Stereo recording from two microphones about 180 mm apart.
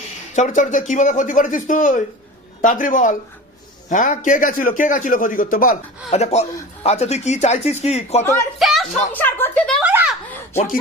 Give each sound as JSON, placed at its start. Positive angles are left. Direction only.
{"t": 0.3, "sound": "a man's voice", "side_deg": 45}
{"t": 6.1, "sound": "speech", "side_deg": 35}
{"t": 8.2, "sound": "speech", "side_deg": 15}
{"t": 8.5, "sound": "speech", "side_deg": 0}
{"t": 9.1, "sound": "speech", "side_deg": 10}
{"t": 9.8, "sound": "a sound", "side_deg": -10}